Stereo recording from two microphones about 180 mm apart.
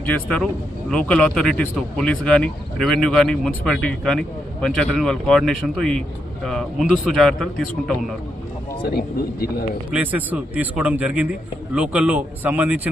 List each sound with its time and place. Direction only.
0.0 s speech: 5° left (ahead or behind)
8.8 s speech: 60° left (ahead or behind)
9.9 s a man's voice: 10° right (ahead or behind)